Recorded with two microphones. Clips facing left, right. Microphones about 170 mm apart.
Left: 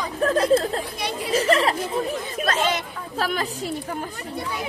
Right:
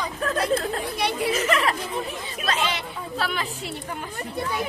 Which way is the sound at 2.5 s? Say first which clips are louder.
Left 2 dB; 45° left (ahead or behind).